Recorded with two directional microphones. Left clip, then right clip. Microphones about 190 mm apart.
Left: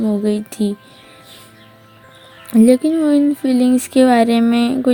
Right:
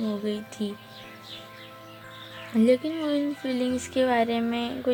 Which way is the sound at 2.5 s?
55° left (ahead or behind).